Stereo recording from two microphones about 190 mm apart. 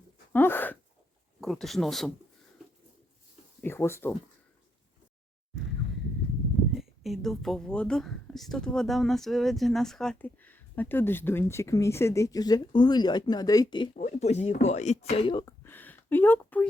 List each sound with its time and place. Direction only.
0.3 s speech: 10° left (ahead or behind)
3.6 s speech: 10° left (ahead or behind)
6.7 s speech: centre (ahead or behind); by 13.9 s 25° left (ahead or behind)
13.9 s speech: 35° left (ahead or behind)
15.6 s a sound: 10° left (ahead or behind)